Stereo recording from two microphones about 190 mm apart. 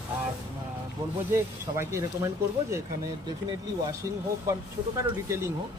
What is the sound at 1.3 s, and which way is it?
Speech, 15° right (ahead or behind).